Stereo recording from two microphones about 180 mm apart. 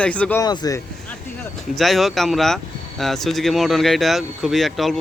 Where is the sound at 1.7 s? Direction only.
Centre (ahead or behind).